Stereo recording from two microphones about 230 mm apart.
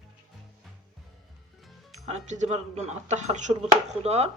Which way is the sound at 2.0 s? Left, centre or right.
Right.